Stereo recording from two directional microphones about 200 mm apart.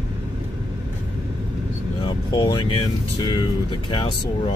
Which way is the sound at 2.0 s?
25° left (ahead or behind).